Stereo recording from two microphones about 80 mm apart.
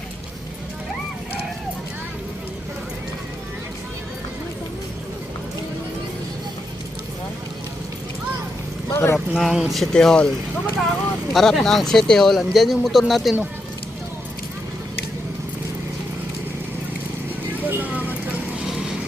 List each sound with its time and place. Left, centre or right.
8.9 s vehicle: left
9.1 s speech: centre
11.3 s speech: centre
17.7 s vehicle: right